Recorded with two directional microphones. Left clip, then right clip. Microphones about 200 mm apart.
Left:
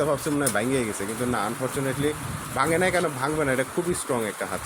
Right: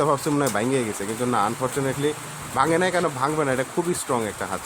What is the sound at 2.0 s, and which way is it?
Speech, 15° right (ahead or behind).